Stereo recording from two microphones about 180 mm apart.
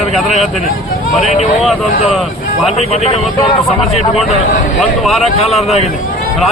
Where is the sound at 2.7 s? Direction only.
35° left (ahead or behind).